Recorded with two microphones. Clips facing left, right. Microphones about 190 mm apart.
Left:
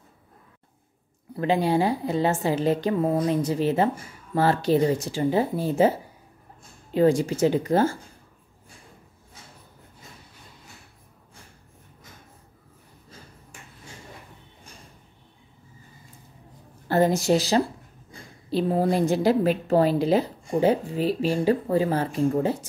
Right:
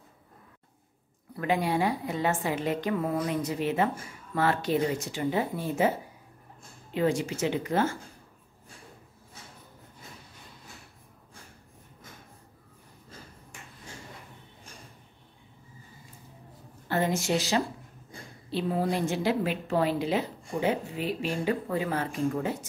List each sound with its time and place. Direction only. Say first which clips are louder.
1.3 s a woman's voice: left 5 dB; 30° left (ahead or behind)
16.8 s a woman's voice: left 7 dB; 40° left (ahead or behind)